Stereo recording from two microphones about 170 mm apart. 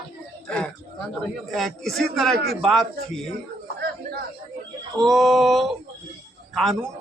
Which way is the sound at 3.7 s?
70° right (ahead or behind).